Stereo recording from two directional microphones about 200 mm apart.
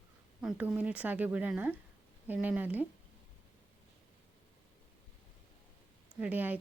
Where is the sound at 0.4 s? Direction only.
5° right (ahead or behind).